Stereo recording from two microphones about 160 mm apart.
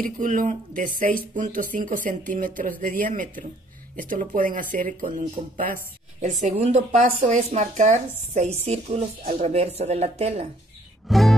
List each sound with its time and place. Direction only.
0.0 s speech: 55° right (ahead or behind)
6.4 s a woman's voice: 45° right (ahead or behind)
11.1 s music: centre (ahead or behind)